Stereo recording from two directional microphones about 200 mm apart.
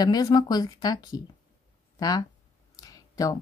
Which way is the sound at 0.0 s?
20° left (ahead or behind).